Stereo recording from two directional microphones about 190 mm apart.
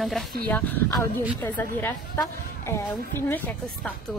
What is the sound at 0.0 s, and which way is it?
A woman's voice, centre (ahead or behind).